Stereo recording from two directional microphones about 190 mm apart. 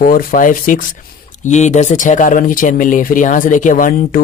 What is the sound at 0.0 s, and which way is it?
A man's voice, 50° left (ahead or behind).